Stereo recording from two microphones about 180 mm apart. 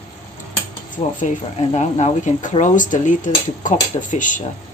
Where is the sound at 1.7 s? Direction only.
40° left (ahead or behind).